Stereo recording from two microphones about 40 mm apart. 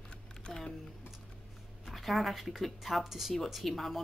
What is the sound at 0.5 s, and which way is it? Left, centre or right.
Computer keyboard, centre.